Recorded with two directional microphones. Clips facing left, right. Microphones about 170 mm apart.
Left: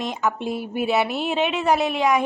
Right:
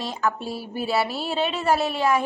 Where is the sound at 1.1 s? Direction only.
35° right (ahead or behind).